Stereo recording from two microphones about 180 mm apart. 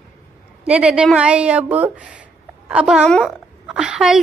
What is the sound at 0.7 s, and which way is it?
A woman's voice, 5° right (ahead or behind).